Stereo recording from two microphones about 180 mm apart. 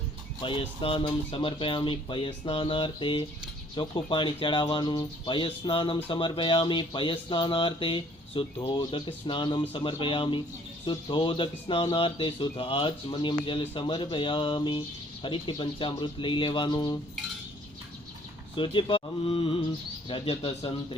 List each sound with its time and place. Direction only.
0.4 s speech: 30° left (ahead or behind)
18.5 s speech: 25° left (ahead or behind)